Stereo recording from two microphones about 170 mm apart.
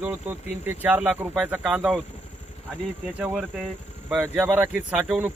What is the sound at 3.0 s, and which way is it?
Speech, 5° right (ahead or behind).